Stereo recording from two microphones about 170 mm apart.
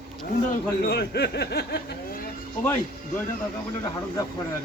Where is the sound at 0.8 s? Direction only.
75° left (ahead or behind).